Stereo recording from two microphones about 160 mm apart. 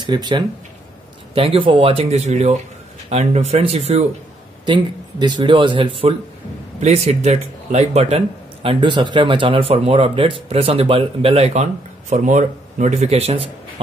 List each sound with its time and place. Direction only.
0.0 s speech: 30° right (ahead or behind)
4.6 s speech: 30° right (ahead or behind)
8.6 s speech: 30° right (ahead or behind)